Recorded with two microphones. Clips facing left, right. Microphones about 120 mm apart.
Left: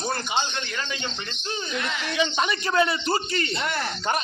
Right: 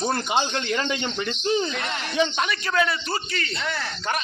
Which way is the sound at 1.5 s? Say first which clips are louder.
Right 5 dB; 70° right (ahead or behind).